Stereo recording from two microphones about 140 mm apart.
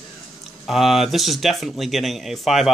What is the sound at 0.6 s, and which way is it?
Speech, centre (ahead or behind).